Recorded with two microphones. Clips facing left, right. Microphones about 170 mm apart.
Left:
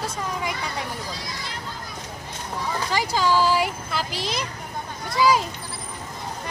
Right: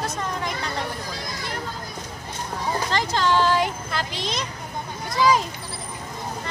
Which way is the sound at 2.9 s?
10° left (ahead or behind).